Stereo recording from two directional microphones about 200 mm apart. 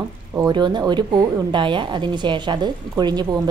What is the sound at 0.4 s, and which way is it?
A woman's voice, 20° right (ahead or behind).